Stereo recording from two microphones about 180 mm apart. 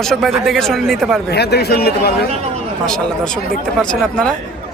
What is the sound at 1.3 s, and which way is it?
Speech, 65° left (ahead or behind).